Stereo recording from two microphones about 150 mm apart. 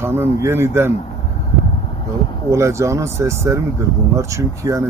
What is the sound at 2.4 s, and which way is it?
Speech, 20° right (ahead or behind).